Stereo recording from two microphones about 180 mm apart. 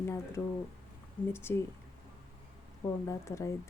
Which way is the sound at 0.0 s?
15° left (ahead or behind).